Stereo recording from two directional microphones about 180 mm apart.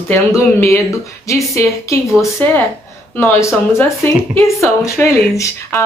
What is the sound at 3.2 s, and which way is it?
Speech, 15° left (ahead or behind).